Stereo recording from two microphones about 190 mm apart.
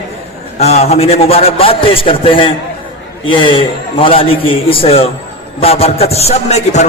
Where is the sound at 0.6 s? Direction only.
35° left (ahead or behind).